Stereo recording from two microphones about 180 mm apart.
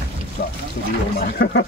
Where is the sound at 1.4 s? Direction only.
70° left (ahead or behind).